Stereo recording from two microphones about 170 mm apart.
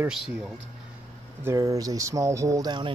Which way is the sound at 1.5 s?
20° right (ahead or behind).